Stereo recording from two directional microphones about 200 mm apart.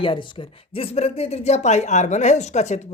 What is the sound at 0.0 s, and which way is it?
A woman's voice, 25° left (ahead or behind).